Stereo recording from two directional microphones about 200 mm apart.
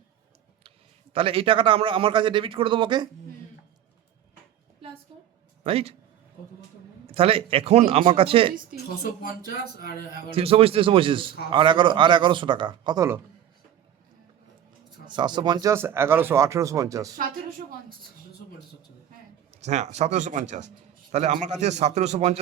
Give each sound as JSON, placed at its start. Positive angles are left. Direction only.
{"t": 1.1, "sound": "a man's voice", "side_deg": -25}
{"t": 5.6, "sound": "a man's voice", "side_deg": -30}
{"t": 7.1, "sound": "a man's voice", "side_deg": -30}
{"t": 9.2, "sound": "speech", "side_deg": 50}
{"t": 10.3, "sound": "a man's voice", "side_deg": -30}
{"t": 15.0, "sound": "speech", "side_deg": -20}
{"t": 19.6, "sound": "a man's voice", "side_deg": -35}